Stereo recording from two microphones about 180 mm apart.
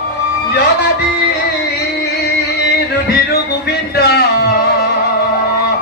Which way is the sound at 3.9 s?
65° left (ahead or behind).